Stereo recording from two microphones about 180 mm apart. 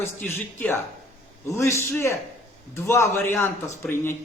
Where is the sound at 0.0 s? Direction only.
10° left (ahead or behind).